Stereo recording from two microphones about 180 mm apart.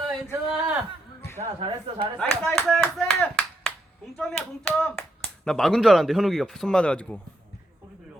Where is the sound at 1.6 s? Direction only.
25° right (ahead or behind).